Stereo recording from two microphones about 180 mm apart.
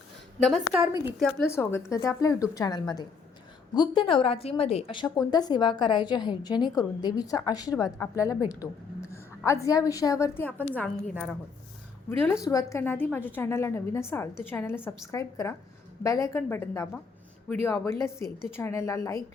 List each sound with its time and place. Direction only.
0.4 s a woman's voice: centre (ahead or behind)
1.5 s a woman's voice: 15° left (ahead or behind)
12.2 s a woman's voice: 15° left (ahead or behind)